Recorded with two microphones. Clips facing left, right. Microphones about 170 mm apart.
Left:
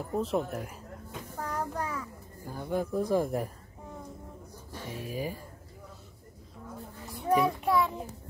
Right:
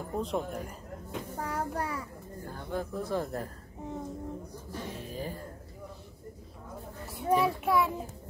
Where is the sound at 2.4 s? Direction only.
10° left (ahead or behind).